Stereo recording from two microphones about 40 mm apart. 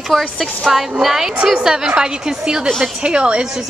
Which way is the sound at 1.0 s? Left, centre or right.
Centre.